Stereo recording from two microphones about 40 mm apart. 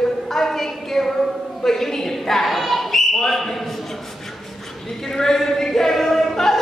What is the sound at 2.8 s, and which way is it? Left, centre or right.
Basketball bounce, centre.